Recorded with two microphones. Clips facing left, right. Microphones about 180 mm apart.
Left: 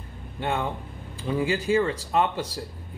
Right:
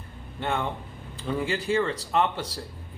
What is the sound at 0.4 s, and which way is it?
Speech, 15° left (ahead or behind).